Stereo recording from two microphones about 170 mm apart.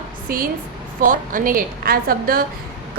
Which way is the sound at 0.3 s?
55° right (ahead or behind).